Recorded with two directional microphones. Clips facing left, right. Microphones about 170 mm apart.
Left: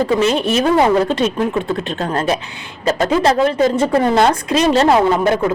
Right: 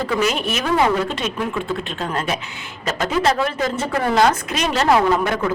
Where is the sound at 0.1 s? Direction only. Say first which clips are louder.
Left 6 dB; 30° left (ahead or behind).